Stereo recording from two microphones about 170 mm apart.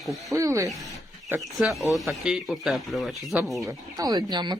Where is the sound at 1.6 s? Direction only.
Centre (ahead or behind).